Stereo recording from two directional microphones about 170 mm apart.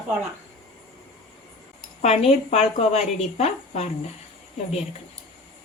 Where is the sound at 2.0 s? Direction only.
40° left (ahead or behind).